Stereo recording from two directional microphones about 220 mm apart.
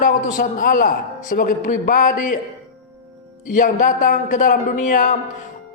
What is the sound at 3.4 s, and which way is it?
A man's voice, 35° left (ahead or behind).